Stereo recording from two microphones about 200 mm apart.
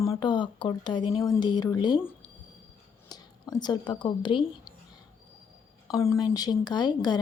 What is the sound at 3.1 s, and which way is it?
Speech, 20° left (ahead or behind).